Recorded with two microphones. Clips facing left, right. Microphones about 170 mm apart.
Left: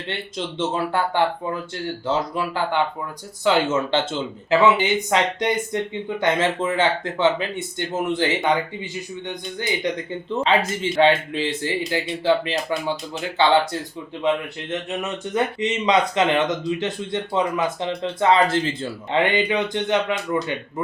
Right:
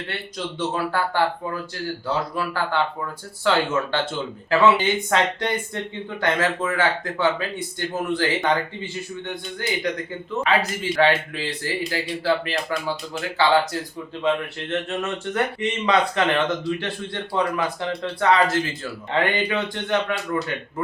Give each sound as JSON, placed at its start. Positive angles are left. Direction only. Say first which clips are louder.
{"t": 0.1, "sound": "speech", "louder": "left 2 dB", "side_deg": 25}
{"t": 14.7, "sound": "speech", "louder": "right 1 dB", "side_deg": 15}